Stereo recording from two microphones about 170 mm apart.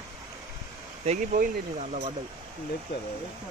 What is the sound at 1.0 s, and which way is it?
Speech, 45° right (ahead or behind).